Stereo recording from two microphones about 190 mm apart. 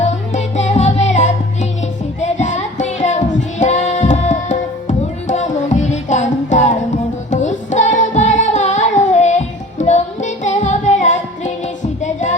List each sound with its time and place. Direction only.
0.0 s music: 35° left (ahead or behind)
2.2 s child singing: 35° left (ahead or behind)
7.3 s music: 40° left (ahead or behind)